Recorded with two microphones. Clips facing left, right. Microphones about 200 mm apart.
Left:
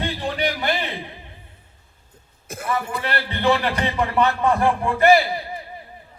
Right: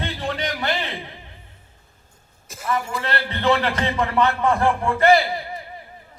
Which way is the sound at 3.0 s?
15° left (ahead or behind).